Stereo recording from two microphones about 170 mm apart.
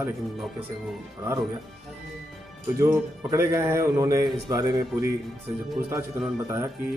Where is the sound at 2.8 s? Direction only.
15° right (ahead or behind).